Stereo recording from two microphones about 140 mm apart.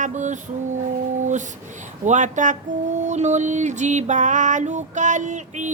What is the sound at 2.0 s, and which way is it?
Speech, 60° right (ahead or behind).